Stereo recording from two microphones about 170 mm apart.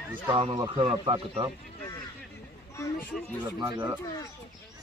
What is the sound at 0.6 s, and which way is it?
Speech, 25° right (ahead or behind).